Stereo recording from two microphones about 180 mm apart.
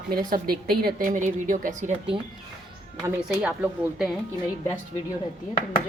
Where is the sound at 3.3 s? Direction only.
5° right (ahead or behind).